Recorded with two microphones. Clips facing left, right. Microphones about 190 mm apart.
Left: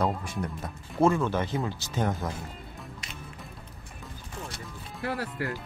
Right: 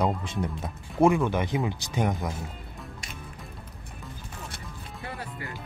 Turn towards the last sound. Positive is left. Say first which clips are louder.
# left 6 dB
turn(degrees=75)  # may be behind; listen again after turning